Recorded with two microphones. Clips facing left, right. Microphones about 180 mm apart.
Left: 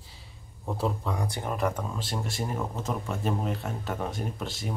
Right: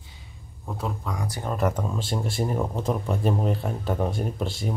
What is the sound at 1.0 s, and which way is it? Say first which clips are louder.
Speech: even; 25° left (ahead or behind).